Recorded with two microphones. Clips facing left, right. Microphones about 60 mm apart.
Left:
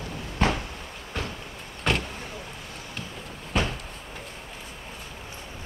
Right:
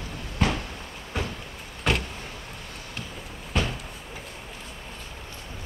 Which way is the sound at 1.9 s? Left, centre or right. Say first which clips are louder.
Even; centre.